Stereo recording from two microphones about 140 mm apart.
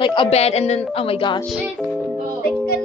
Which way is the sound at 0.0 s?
35° left (ahead or behind).